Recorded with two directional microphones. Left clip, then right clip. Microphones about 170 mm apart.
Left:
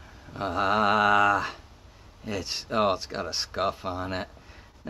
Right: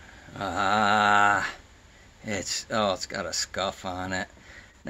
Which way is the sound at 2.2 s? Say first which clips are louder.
Right 1 dB; 40° right (ahead or behind).